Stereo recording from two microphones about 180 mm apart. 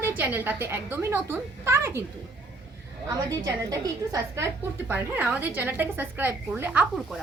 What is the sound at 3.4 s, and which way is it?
A woman's voice, 20° right (ahead or behind).